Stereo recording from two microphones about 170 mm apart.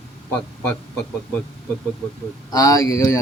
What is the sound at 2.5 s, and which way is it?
Speech, 20° left (ahead or behind).